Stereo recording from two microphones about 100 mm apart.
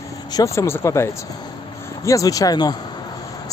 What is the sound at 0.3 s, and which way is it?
Speech, 30° left (ahead or behind).